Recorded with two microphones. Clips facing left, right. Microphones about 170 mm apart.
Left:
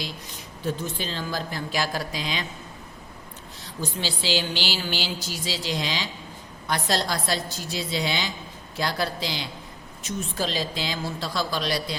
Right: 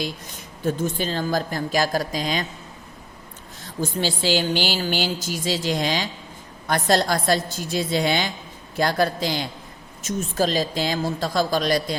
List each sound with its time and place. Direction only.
0.6 s speech: 45° right (ahead or behind)
3.8 s speech: 45° right (ahead or behind)